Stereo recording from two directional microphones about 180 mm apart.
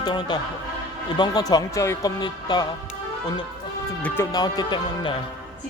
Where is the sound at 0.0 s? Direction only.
25° left (ahead or behind).